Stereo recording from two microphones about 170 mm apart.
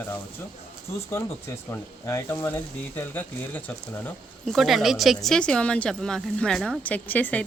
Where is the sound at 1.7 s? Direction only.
15° left (ahead or behind).